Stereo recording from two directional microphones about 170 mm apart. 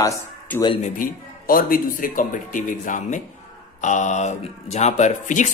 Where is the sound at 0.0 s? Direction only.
20° left (ahead or behind).